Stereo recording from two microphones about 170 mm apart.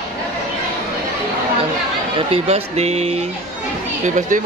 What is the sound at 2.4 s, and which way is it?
Speech, 40° right (ahead or behind).